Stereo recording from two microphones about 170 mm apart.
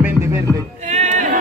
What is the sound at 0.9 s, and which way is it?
Music, 45° right (ahead or behind).